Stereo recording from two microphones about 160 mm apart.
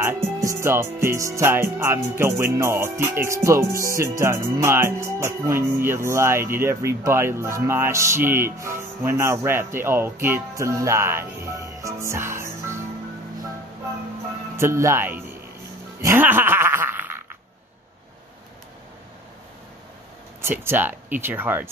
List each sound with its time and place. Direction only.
0.0 s speech: 20° right (ahead or behind)
14.6 s speech: 15° right (ahead or behind)
16.0 s music: 15° right (ahead or behind)
20.4 s speech: 15° right (ahead or behind)